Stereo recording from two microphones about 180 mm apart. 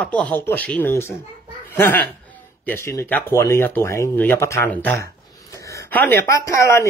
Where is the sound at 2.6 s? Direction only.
10° left (ahead or behind).